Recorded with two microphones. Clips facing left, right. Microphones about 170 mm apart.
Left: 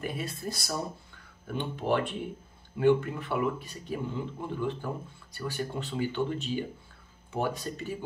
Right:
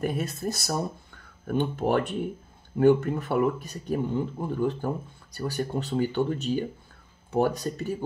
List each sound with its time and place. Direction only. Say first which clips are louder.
0.0 s speech: right 6 dB; 45° right (ahead or behind)